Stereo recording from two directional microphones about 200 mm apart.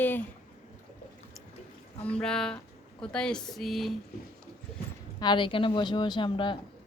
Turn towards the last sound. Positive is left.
turn(degrees=25)  # may be behind; listen again after turning